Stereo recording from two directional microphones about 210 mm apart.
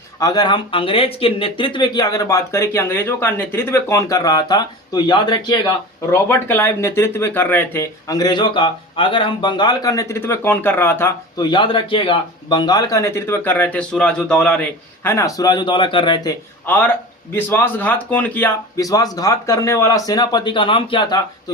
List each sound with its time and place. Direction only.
0.2 s speech: 20° left (ahead or behind)
11.5 s speech: 25° left (ahead or behind)
16.6 s speech: 10° left (ahead or behind)